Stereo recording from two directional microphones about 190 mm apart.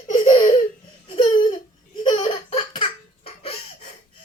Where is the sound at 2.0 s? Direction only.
30° left (ahead or behind).